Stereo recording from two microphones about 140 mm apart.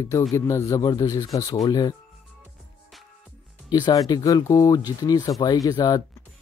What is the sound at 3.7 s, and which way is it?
Speech, 25° left (ahead or behind).